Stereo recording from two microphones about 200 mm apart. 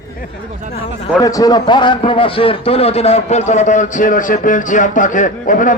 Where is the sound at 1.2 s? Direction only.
15° left (ahead or behind).